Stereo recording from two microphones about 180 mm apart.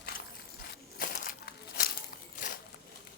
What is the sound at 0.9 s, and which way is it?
Crushing, 50° left (ahead or behind).